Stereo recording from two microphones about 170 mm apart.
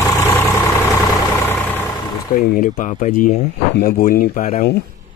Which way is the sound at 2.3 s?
55° left (ahead or behind).